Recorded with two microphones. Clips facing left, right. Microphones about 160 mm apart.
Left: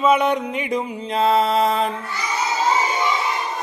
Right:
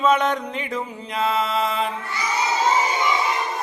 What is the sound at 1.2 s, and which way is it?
Mantra, 35° left (ahead or behind).